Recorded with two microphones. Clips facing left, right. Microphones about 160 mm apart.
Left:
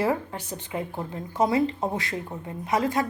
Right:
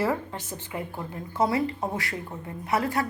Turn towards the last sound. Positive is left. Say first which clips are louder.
# left 2 dB
turn(degrees=15)  # may be behind; listen again after turning